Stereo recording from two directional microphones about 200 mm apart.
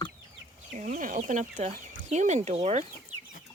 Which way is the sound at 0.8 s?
40° right (ahead or behind).